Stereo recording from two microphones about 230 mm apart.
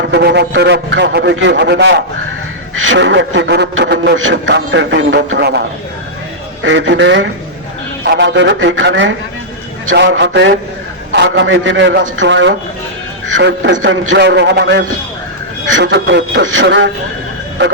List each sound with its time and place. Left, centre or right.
0.0 s a man's voice: right